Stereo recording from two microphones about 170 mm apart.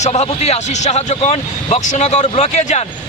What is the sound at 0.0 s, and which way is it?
Speech, 40° left (ahead or behind).